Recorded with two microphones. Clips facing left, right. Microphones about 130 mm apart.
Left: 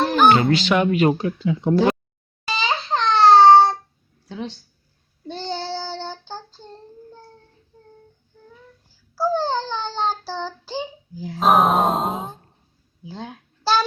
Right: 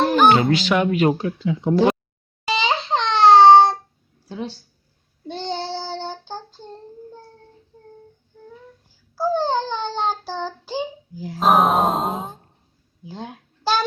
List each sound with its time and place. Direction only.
0.1 s music: 5° right (ahead or behind)
0.7 s speech: centre (ahead or behind)
2.5 s a sound: 25° right (ahead or behind)
4.3 s a sound: 10° right (ahead or behind)
5.3 s child singing: 20° right (ahead or behind)
7.7 s child singing: 15° right (ahead or behind)
9.1 s child singing: 15° right (ahead or behind)
11.2 s grunt: centre (ahead or behind)